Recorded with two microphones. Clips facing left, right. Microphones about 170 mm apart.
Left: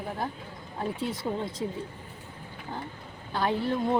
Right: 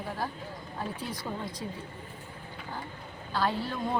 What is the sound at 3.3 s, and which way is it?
Speech, 20° left (ahead or behind).